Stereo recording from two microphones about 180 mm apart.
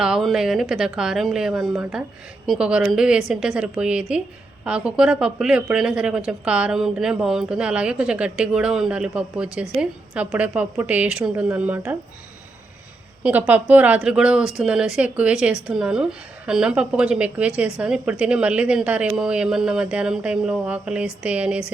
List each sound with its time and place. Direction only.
0.0 s speech: centre (ahead or behind)
13.2 s speech: 10° right (ahead or behind)